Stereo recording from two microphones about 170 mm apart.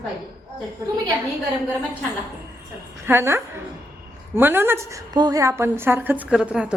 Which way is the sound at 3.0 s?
15° right (ahead or behind).